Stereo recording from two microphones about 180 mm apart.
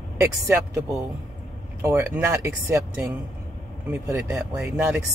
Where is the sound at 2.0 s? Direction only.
10° right (ahead or behind).